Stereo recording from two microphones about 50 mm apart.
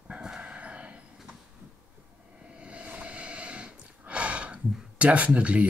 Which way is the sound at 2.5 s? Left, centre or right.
Right.